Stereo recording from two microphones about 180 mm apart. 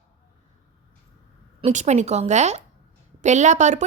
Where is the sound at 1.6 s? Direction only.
40° right (ahead or behind).